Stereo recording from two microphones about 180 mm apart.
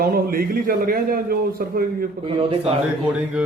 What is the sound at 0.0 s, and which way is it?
A man's voice, 55° right (ahead or behind).